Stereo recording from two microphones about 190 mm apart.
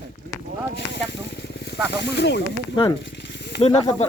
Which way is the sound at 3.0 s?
65° left (ahead or behind).